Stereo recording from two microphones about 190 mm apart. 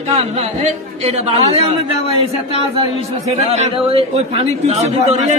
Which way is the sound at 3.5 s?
30° right (ahead or behind).